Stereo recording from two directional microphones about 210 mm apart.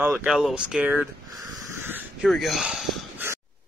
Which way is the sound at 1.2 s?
15° right (ahead or behind).